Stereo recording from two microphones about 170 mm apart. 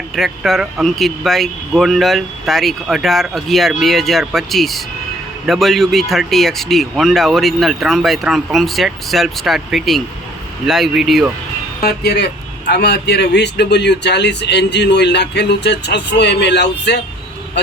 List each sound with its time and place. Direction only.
0.2 s speech: centre (ahead or behind)
11.8 s speech: 65° left (ahead or behind); by 17.0 s 85° left